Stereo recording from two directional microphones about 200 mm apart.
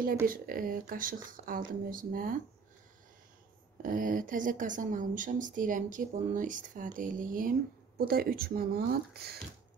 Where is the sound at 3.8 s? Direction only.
40° right (ahead or behind).